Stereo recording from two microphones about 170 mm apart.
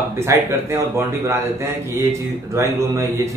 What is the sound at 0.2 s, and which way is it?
A man's voice, 15° right (ahead or behind).